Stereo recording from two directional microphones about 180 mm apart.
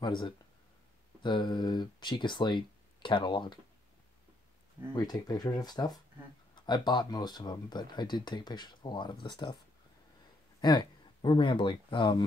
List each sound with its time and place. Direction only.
0.0 s speech: 25° left (ahead or behind)
4.9 s speech: 20° left (ahead or behind)
10.6 s speech: 25° left (ahead or behind)